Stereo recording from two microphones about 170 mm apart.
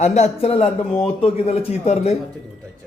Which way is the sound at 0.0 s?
40° left (ahead or behind).